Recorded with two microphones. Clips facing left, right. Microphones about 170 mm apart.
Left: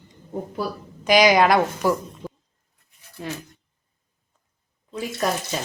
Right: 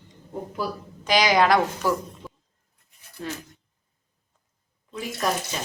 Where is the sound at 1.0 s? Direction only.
15° left (ahead or behind).